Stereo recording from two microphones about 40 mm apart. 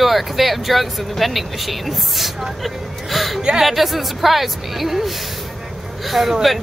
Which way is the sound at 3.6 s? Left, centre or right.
Centre.